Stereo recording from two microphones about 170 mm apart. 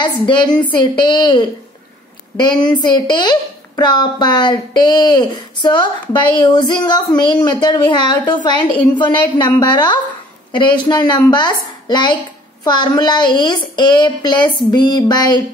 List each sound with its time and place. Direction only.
0.0 s a woman's voice: 25° left (ahead or behind)